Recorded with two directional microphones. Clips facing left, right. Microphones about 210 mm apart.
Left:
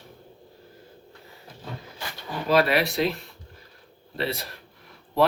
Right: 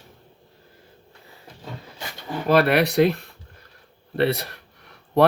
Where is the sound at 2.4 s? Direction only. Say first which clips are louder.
Right 3 dB; 60° right (ahead or behind).